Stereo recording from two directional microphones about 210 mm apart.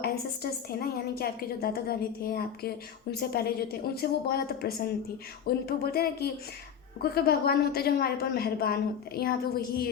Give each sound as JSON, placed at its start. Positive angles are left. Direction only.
{"t": 0.0, "sound": "a woman's voice", "side_deg": 45}